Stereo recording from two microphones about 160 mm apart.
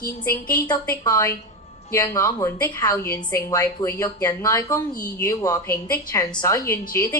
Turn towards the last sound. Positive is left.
turn(degrees=20)  # may be behind; listen again after turning